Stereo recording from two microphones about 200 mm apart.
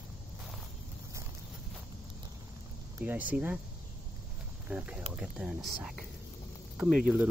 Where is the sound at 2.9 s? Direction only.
10° right (ahead or behind).